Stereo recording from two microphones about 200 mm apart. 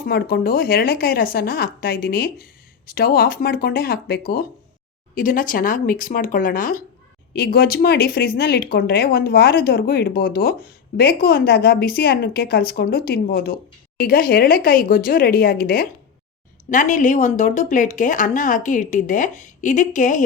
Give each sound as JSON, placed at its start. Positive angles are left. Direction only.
{"t": 0.0, "sound": "speech", "side_deg": 50}